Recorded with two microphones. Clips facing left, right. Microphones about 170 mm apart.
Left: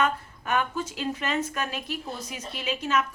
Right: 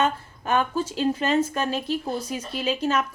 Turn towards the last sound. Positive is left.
turn(degrees=-35)  # may be behind; listen again after turning